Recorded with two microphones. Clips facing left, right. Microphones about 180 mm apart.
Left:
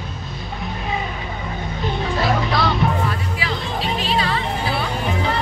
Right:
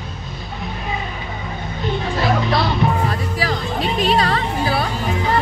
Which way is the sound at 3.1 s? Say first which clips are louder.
Right 3 dB; 40° right (ahead or behind).